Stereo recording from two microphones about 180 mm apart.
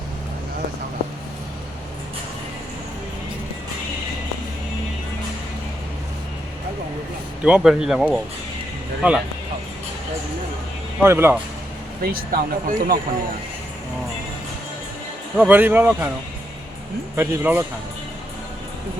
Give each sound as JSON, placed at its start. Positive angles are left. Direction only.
{"t": 7.4, "sound": "speech", "side_deg": -5}
{"t": 11.0, "sound": "speech", "side_deg": -15}
{"t": 12.0, "sound": "speech", "side_deg": -55}
{"t": 15.4, "sound": "speech", "side_deg": -10}
{"t": 17.2, "sound": "speech", "side_deg": -10}